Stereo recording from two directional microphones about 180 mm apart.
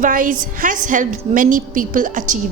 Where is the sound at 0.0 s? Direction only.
50° right (ahead or behind).